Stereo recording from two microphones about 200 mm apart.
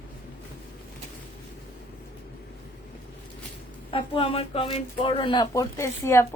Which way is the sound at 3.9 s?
25° left (ahead or behind).